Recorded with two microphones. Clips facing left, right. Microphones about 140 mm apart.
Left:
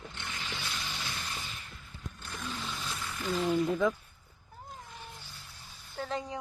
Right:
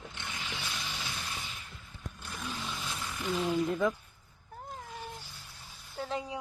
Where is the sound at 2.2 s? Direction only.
10° right (ahead or behind).